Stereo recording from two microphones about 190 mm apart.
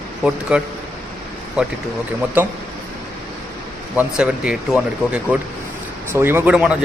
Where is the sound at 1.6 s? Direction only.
5° right (ahead or behind).